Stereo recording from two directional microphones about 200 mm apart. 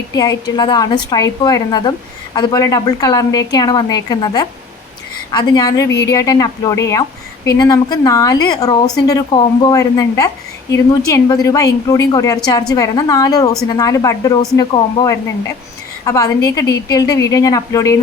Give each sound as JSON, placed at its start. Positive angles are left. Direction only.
{"t": 0.1, "sound": "a woman's voice", "side_deg": 20}